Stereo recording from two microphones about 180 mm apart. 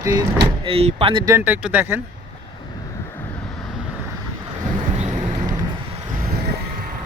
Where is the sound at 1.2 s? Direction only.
10° right (ahead or behind).